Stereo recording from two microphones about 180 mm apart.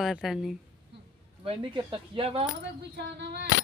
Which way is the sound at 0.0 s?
Centre (ahead or behind).